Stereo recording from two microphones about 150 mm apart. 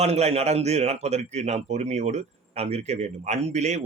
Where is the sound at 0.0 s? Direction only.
45° right (ahead or behind).